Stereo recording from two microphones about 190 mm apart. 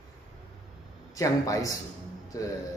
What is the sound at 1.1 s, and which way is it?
Speech, 15° left (ahead or behind).